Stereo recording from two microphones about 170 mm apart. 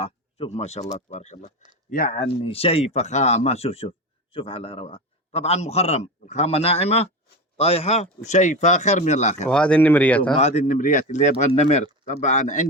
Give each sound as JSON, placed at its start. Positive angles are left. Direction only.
{"t": 0.0, "sound": "speech", "side_deg": 40}
{"t": 1.9, "sound": "speech", "side_deg": 65}
{"t": 2.4, "sound": "speech", "side_deg": 35}
{"t": 9.5, "sound": "speech", "side_deg": 5}
{"t": 10.3, "sound": "speech", "side_deg": 45}